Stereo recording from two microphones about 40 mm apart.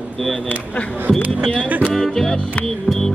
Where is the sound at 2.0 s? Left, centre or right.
Centre.